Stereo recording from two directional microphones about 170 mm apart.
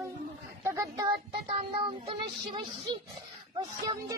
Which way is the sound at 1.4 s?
30° right (ahead or behind).